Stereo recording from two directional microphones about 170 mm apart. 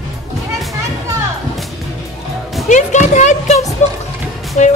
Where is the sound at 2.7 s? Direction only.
45° left (ahead or behind).